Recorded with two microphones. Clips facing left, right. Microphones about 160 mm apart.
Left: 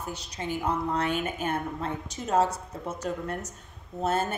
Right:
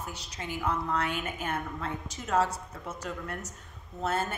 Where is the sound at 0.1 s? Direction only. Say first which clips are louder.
Left 5 dB; 25° left (ahead or behind).